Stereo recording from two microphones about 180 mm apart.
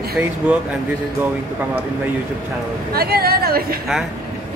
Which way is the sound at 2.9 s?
60° right (ahead or behind).